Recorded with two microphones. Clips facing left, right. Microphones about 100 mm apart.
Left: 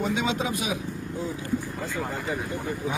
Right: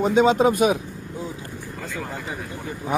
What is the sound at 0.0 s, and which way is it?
Speech, 40° right (ahead or behind).